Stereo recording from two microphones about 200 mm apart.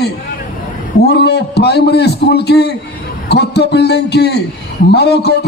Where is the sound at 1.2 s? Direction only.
55° left (ahead or behind).